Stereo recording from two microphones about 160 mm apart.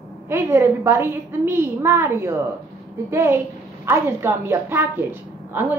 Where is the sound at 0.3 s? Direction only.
15° right (ahead or behind).